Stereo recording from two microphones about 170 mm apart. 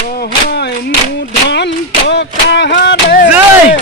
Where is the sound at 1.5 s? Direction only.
90° left; by 3.3 s 65° left (ahead or behind).